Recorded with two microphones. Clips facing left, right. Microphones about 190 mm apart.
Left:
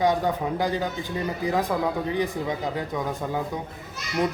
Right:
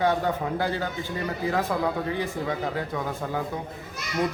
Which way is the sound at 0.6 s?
15° left (ahead or behind).